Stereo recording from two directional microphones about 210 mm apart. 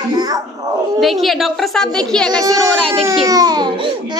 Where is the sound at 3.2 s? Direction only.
20° right (ahead or behind).